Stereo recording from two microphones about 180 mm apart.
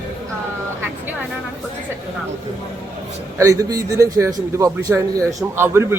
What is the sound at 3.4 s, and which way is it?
A man's voice, 15° right (ahead or behind).